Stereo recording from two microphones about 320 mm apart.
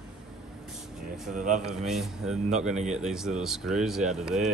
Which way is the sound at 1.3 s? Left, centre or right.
Right.